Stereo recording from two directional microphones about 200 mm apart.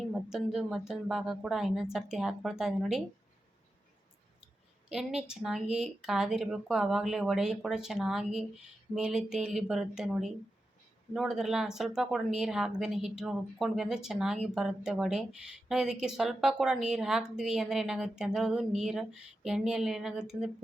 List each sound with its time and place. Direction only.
0.1 s speech: centre (ahead or behind)
4.9 s speech: 5° right (ahead or behind)